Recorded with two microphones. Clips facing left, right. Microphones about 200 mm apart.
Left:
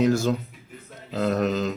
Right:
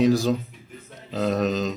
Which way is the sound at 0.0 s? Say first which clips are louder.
Right 2 dB; 15° right (ahead or behind).